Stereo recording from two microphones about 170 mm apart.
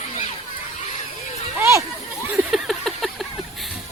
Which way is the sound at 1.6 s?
15° right (ahead or behind).